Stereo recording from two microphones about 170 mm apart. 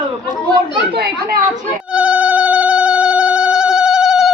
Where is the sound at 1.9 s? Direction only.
5° right (ahead or behind).